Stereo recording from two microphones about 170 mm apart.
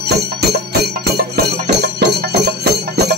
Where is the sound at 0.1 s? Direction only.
75° right (ahead or behind).